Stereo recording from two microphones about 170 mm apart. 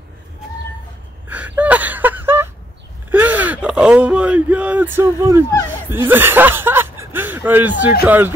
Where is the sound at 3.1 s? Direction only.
10° right (ahead or behind).